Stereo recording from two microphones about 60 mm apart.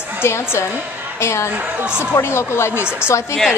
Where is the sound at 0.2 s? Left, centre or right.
Left.